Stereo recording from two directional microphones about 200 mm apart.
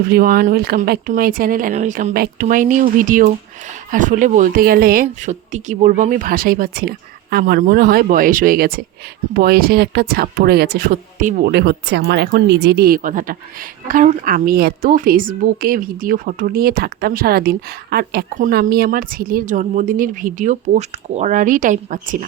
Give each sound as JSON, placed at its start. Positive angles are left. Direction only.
{"t": 0.1, "sound": "a woman's voice", "side_deg": -45}
{"t": 5.0, "sound": "a woman's voice", "side_deg": -35}
{"t": 11.5, "sound": "a woman's voice", "side_deg": -55}